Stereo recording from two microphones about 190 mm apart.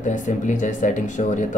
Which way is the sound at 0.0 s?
40° left (ahead or behind).